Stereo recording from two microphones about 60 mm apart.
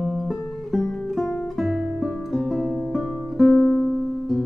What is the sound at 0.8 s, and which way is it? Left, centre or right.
Music, centre.